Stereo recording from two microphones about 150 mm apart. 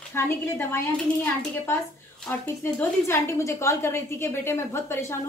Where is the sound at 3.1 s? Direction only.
20° left (ahead or behind).